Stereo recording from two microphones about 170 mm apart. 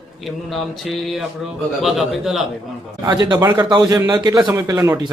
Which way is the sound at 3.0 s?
25° right (ahead or behind).